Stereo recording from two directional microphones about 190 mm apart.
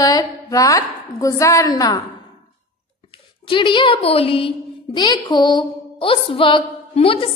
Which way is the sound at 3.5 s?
25° left (ahead or behind).